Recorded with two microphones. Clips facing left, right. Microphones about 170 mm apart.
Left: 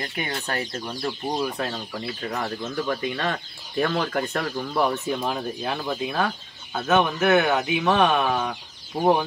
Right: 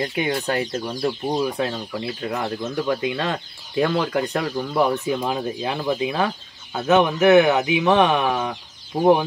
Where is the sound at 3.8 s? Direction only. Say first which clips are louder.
Right 3 dB; 15° right (ahead or behind).